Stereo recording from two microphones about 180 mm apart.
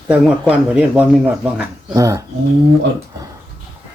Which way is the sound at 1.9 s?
20° right (ahead or behind).